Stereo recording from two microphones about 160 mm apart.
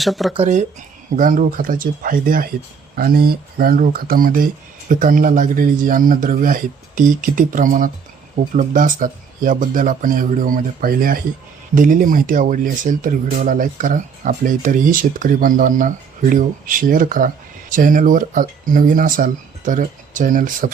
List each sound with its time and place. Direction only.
0.0 s speech: centre (ahead or behind)
0.3 s speech: 50° right (ahead or behind)